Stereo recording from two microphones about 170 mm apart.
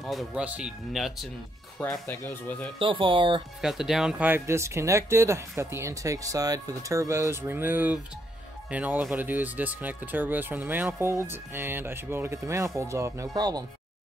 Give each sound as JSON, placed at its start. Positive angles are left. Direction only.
{"t": 0.0, "sound": "speech", "side_deg": 0}
{"t": 1.8, "sound": "speech", "side_deg": 10}
{"t": 2.8, "sound": "speech", "side_deg": -30}
{"t": 3.6, "sound": "speech", "side_deg": 0}